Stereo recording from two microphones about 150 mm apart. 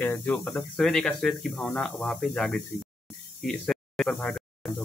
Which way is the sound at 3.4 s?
5° left (ahead or behind).